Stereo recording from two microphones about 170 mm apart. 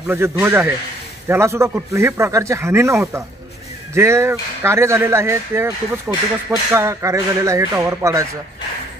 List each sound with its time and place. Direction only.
0.1 s speech: 15° right (ahead or behind)